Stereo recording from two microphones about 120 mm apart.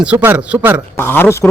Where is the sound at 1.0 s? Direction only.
20° left (ahead or behind).